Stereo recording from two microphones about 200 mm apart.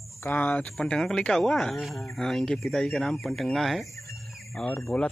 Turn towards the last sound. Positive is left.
turn(degrees=5)  # may be behind; listen again after turning